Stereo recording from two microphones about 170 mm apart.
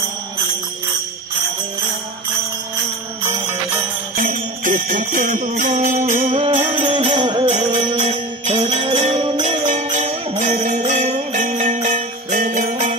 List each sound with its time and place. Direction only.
3.3 s music: 15° right (ahead or behind)
4.2 s jingle bell: 50° right (ahead or behind)
6.3 s music: 35° right (ahead or behind)
8.0 s music: 45° right (ahead or behind)
8.5 s music: 30° right (ahead or behind)
9.7 s jingle bell: 45° right (ahead or behind)
10.4 s music: 45° right (ahead or behind)